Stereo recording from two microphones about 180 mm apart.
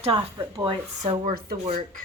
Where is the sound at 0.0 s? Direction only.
30° right (ahead or behind); by 1.5 s 55° right (ahead or behind).